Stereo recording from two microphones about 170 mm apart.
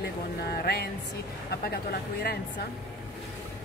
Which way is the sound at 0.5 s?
65° left (ahead or behind).